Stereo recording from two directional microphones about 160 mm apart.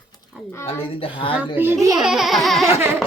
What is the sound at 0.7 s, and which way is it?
Speech, 35° left (ahead or behind).